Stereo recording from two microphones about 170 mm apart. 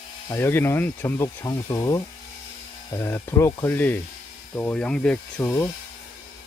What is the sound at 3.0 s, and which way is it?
Speech, 15° left (ahead or behind).